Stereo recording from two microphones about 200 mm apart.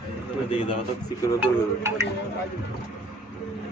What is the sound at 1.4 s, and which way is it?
Speech, 10° right (ahead or behind).